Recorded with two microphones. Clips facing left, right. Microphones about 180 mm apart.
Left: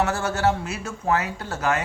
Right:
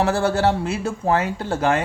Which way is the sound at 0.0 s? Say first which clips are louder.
Right 4 dB; 30° right (ahead or behind).